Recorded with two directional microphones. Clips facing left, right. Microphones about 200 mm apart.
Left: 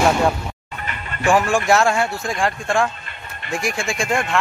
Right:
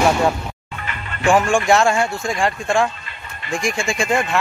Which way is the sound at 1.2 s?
Centre (ahead or behind).